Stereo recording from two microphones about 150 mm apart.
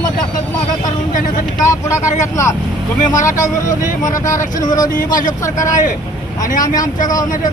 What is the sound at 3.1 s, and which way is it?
Speech, 60° left (ahead or behind).